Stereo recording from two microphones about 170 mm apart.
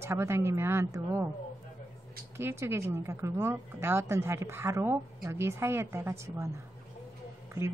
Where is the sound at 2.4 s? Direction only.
15° right (ahead or behind).